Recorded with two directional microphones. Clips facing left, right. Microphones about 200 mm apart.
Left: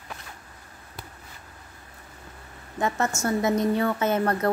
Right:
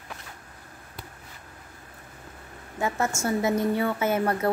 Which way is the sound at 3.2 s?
10° right (ahead or behind).